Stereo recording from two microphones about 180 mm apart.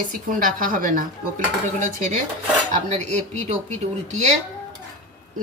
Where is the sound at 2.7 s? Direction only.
40° right (ahead or behind).